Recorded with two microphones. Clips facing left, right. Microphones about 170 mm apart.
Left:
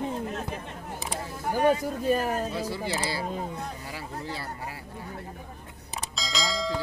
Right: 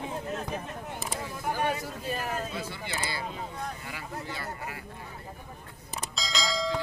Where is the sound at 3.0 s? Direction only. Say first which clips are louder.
Left 4 dB; 35° left (ahead or behind).